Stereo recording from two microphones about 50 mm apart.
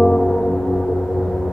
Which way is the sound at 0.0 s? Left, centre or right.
Centre.